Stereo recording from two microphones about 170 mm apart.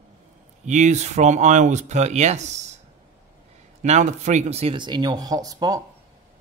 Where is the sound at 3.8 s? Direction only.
45° right (ahead or behind); by 5.8 s 20° right (ahead or behind).